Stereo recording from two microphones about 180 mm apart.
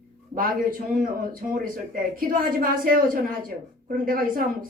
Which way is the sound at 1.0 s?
50° right (ahead or behind).